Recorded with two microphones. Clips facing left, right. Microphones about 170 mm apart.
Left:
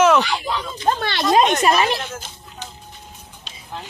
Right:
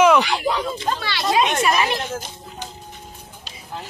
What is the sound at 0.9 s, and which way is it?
Speech, 50° left (ahead or behind).